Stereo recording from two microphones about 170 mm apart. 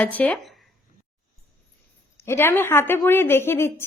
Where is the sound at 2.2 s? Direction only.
15° left (ahead or behind).